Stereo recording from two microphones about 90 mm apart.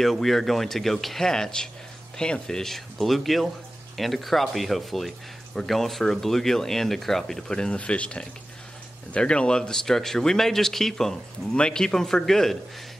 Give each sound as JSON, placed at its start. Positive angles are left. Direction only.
{"t": 0.0, "sound": "speech", "side_deg": 0}